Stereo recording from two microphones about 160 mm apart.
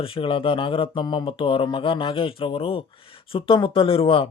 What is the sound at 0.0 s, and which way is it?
Speech, 35° left (ahead or behind).